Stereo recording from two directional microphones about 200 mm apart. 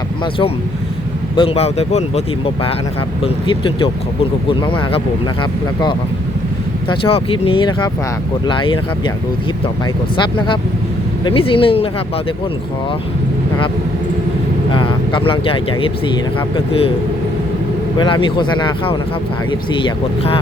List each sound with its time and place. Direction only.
1.4 s speech: 30° left (ahead or behind)
10.2 s speech: 25° left (ahead or behind)
14.7 s speech: 25° left (ahead or behind)
17.9 s speech: 25° left (ahead or behind)